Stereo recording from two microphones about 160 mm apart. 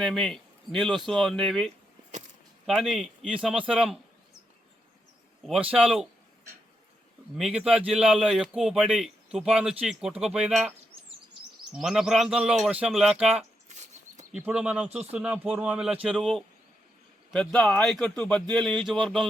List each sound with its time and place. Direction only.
0.0 s a man's voice: centre (ahead or behind)
5.4 s a man's voice: 5° right (ahead or behind)
7.3 s a man's voice: 5° right (ahead or behind)
11.8 s a man's voice: 5° right (ahead or behind)
13.7 s a sound: 45° right (ahead or behind)
14.3 s a man's voice: 5° right (ahead or behind)